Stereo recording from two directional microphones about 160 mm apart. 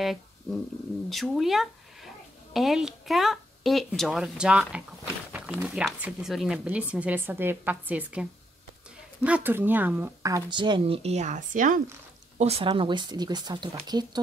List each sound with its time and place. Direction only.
0.0 s a sound: centre (ahead or behind)
1.1 s a woman's voice: centre (ahead or behind); by 11.8 s 55° right (ahead or behind)
12.4 s a woman's voice: 40° right (ahead or behind)